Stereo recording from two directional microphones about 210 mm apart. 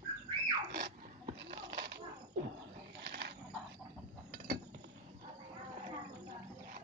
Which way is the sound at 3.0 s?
50° right (ahead or behind).